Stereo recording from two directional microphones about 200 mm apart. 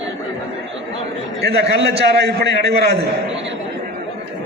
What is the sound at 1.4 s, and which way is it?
A man's voice, 55° right (ahead or behind).